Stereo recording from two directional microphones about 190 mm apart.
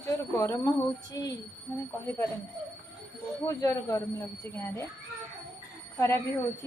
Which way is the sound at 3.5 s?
15° left (ahead or behind).